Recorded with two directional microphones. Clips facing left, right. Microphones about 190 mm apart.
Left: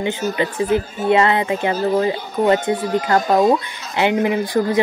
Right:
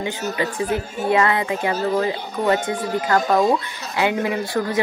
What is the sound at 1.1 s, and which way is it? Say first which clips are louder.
A woman's voice: left 3 dB; 25° left (ahead or behind).